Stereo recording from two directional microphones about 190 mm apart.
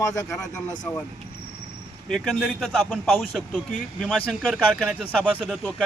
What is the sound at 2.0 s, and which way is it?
Speech, centre (ahead or behind).